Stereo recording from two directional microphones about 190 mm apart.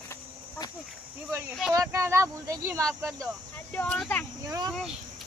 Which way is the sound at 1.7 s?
15° right (ahead or behind).